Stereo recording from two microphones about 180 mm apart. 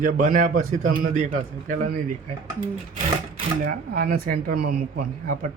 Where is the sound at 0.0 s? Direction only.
45° right (ahead or behind).